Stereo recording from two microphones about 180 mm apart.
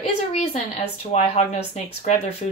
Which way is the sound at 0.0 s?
35° left (ahead or behind).